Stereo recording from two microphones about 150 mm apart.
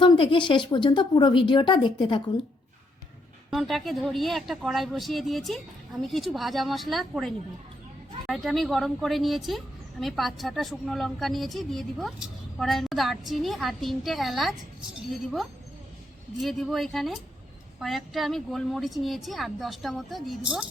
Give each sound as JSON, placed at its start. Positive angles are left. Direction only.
{"t": 0.0, "sound": "speech", "side_deg": 35}
{"t": 3.5, "sound": "a woman's voice", "side_deg": 0}